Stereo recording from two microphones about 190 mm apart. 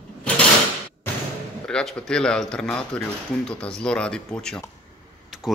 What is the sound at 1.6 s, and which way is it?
Speech, 5° left (ahead or behind).